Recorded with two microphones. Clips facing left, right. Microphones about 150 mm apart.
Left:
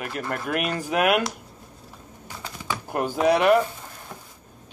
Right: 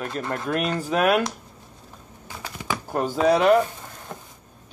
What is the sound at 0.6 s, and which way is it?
Speech, 10° left (ahead or behind).